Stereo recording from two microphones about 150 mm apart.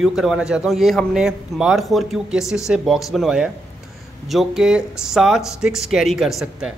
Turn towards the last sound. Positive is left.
turn(degrees=-5)  # may be behind; listen again after turning